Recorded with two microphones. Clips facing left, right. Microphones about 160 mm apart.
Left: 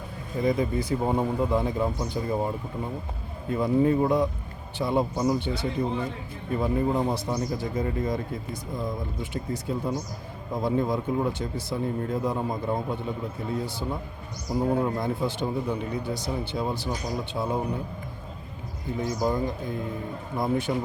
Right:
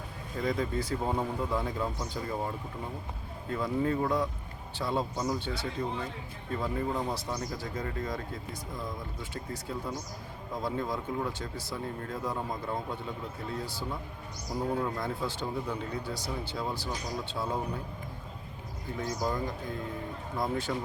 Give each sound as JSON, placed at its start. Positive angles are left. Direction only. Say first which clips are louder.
{"t": 0.3, "sound": "speech", "louder": "left 6 dB", "side_deg": 15}
{"t": 3.5, "sound": "speech", "louder": "left 7 dB", "side_deg": 15}
{"t": 9.3, "sound": "speech", "louder": "left 7 dB", "side_deg": 20}
{"t": 18.9, "sound": "speech", "louder": "left 6 dB", "side_deg": 20}